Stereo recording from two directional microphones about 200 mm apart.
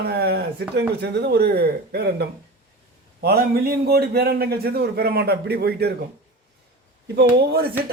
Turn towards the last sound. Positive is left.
turn(degrees=-50)  # may be behind; listen again after turning